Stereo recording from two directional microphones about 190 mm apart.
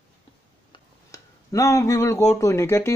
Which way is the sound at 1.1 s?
15° left (ahead or behind).